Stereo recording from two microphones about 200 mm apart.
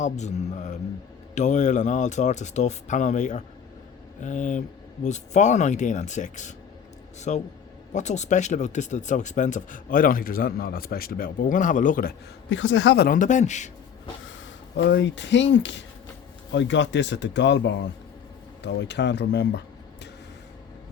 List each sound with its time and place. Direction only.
0.0 s speech: 35° left (ahead or behind)
12.5 s speech: 70° left (ahead or behind); by 13.7 s 35° left (ahead or behind)
14.8 s speech: 65° left (ahead or behind)